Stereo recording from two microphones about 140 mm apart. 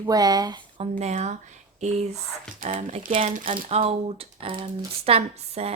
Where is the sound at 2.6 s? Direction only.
75° right (ahead or behind).